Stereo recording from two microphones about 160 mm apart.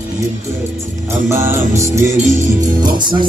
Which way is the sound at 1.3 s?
15° right (ahead or behind).